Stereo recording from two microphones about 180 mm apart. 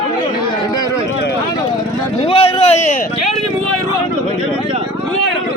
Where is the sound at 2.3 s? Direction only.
35° left (ahead or behind).